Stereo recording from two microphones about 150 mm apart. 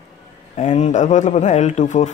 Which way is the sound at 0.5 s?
50° left (ahead or behind).